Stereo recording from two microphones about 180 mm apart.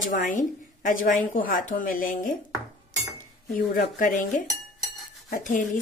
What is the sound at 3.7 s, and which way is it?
A woman's voice, 50° left (ahead or behind).